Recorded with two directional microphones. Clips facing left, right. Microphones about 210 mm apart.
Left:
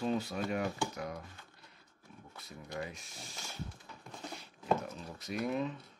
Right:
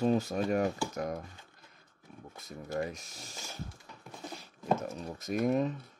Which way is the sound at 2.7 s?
40° right (ahead or behind).